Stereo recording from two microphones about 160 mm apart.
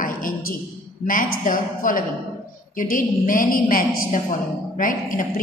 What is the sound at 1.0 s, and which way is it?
A woman's voice, 55° left (ahead or behind).